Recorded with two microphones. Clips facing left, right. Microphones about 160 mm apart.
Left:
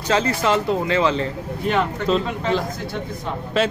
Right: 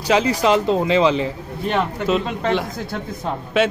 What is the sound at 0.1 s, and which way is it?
Speech, 15° right (ahead or behind).